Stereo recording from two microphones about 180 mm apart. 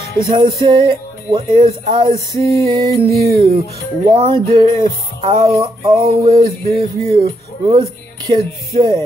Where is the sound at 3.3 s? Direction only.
55° right (ahead or behind).